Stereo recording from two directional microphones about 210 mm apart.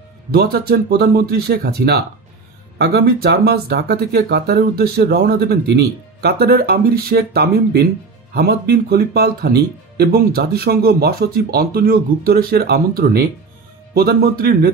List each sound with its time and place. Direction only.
0.3 s speech: 45° right (ahead or behind)